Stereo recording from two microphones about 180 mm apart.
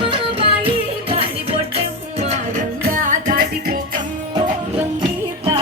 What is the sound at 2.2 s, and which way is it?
Music, 40° right (ahead or behind).